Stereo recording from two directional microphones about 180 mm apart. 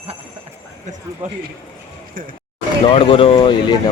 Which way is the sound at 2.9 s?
30° left (ahead or behind).